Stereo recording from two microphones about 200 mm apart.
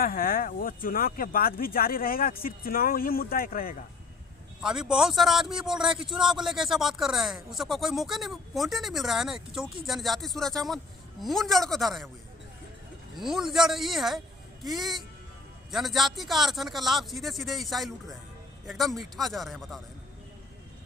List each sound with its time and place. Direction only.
0.0 s speech: 45° left (ahead or behind)
4.6 s a man's voice: 5° right (ahead or behind)
13.1 s a man's voice: centre (ahead or behind)